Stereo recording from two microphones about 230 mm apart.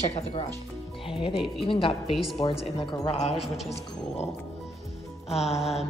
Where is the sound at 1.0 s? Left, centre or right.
Left.